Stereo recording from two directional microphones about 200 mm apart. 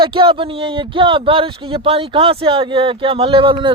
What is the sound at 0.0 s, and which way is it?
Speech, 25° right (ahead or behind).